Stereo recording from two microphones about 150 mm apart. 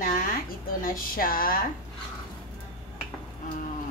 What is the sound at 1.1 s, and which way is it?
Speech, 75° left (ahead or behind).